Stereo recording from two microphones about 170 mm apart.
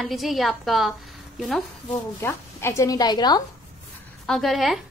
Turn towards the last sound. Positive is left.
turn(degrees=0)  # may be behind; listen again after turning